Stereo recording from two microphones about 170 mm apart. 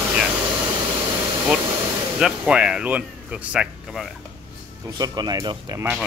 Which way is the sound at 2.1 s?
5° right (ahead or behind).